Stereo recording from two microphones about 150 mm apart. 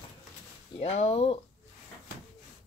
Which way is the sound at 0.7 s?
45° left (ahead or behind).